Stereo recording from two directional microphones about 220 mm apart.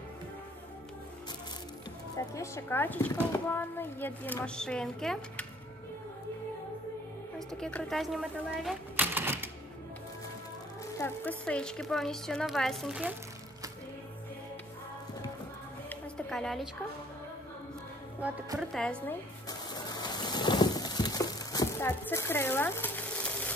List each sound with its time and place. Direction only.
2.1 s a woman's voice: 15° left (ahead or behind)
7.3 s speech: 5° left (ahead or behind)
11.0 s speech: 10° left (ahead or behind)
15.9 s music: 5° left (ahead or behind)
18.2 s speech: 5° right (ahead or behind)
19.7 s rain: 20° left (ahead or behind)